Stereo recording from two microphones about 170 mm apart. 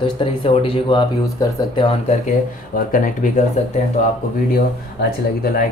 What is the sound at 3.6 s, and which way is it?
Speech, 40° left (ahead or behind).